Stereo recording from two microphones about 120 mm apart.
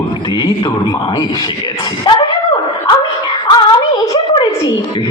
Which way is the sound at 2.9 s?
40° left (ahead or behind).